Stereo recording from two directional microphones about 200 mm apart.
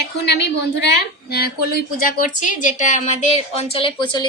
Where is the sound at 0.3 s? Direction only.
55° left (ahead or behind).